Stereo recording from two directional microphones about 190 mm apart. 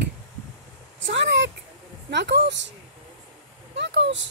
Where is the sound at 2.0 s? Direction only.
65° right (ahead or behind).